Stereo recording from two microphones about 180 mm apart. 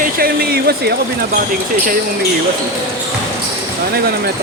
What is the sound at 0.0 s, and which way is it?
Speech, 55° right (ahead or behind).